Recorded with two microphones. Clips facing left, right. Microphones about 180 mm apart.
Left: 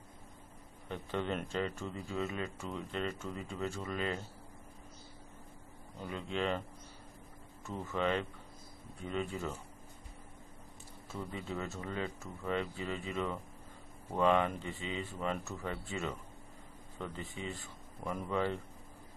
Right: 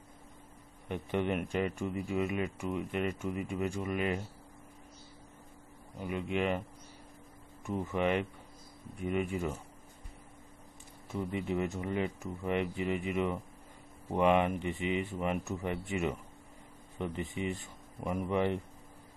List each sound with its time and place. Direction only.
0.8 s speech: 15° right (ahead or behind)
5.9 s speech: 15° right (ahead or behind)
7.6 s speech: 15° right (ahead or behind)
11.1 s speech: 15° right (ahead or behind)